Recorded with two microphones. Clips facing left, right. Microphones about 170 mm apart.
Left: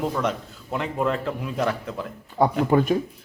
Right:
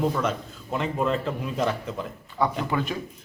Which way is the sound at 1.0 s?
15° right (ahead or behind).